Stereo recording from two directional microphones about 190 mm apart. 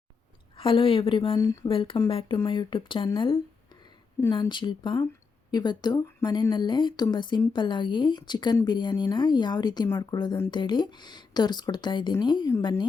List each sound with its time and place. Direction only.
0.5 s speech: 25° left (ahead or behind)